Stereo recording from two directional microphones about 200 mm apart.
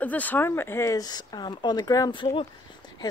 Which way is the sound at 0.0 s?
10° left (ahead or behind).